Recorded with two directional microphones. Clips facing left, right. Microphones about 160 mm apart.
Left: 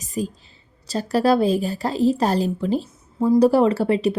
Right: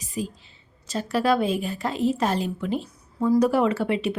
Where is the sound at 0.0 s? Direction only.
45° left (ahead or behind).